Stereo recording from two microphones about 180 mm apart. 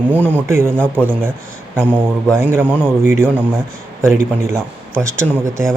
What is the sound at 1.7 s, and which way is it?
A man's voice, 10° right (ahead or behind).